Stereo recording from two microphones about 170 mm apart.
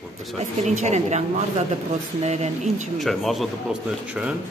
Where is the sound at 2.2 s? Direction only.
40° right (ahead or behind).